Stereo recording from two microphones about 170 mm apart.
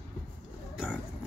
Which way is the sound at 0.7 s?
5° right (ahead or behind).